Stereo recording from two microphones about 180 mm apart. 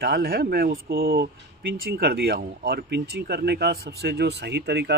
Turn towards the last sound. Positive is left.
turn(degrees=-70)  # may be behind; listen again after turning